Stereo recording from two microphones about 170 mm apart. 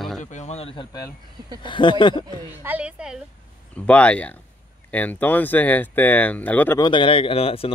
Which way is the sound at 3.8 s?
10° left (ahead or behind).